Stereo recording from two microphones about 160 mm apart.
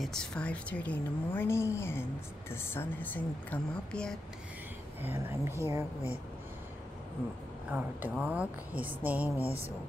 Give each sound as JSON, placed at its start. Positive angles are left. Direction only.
{"t": 0.0, "sound": "speech", "side_deg": 5}
{"t": 5.1, "sound": "speech", "side_deg": -15}
{"t": 7.7, "sound": "speech", "side_deg": -10}